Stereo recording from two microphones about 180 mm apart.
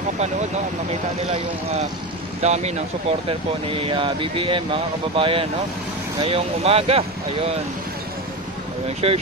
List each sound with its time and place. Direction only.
1.3 s speech: 35° right (ahead or behind)
8.8 s speech: 35° right (ahead or behind)